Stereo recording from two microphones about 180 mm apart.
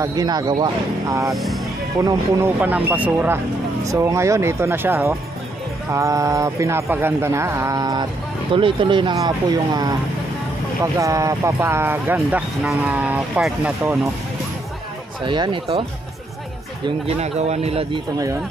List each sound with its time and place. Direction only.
0.0 s speech: 20° right (ahead or behind)
1.3 s speech: centre (ahead or behind)
2.0 s speech: 10° right (ahead or behind)
10.8 s speech: 15° right (ahead or behind)
15.2 s speech: 25° right (ahead or behind)
17.0 s a man's voice: 35° right (ahead or behind)